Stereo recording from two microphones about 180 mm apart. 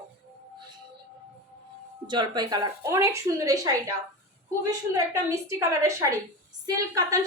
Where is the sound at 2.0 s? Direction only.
25° right (ahead or behind).